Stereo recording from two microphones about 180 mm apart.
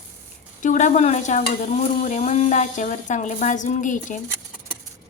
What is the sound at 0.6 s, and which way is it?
A woman's voice, 45° left (ahead or behind).